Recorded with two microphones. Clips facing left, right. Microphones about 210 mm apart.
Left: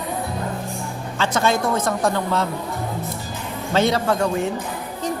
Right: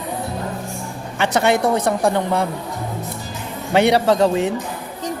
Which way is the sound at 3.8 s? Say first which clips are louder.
Right 5 dB; 70° right (ahead or behind).